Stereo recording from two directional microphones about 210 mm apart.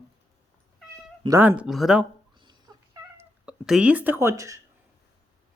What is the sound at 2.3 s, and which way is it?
Cat, 20° right (ahead or behind).